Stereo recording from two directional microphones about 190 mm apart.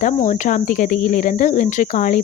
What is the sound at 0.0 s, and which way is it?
Speech, 40° left (ahead or behind).